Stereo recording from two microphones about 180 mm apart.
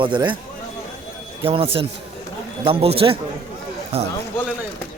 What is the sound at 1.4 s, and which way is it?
Speech, 30° right (ahead or behind).